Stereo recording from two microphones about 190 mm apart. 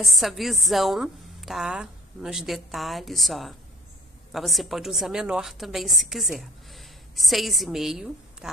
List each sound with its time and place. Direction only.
0.0 s a woman's voice: centre (ahead or behind)